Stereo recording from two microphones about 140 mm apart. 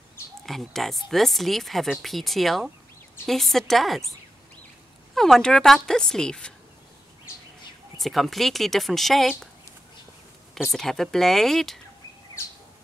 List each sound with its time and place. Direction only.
0.5 s speech: centre (ahead or behind)
5.1 s speech: centre (ahead or behind)
8.0 s speech: centre (ahead or behind)
10.5 s speech: centre (ahead or behind)